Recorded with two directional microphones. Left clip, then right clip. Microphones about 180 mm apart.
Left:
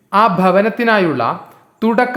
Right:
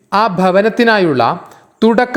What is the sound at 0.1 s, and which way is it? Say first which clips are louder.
Speech: even; 25° right (ahead or behind).